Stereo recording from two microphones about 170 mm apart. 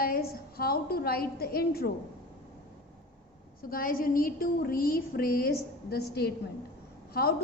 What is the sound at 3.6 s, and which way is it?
A woman's voice, 55° left (ahead or behind).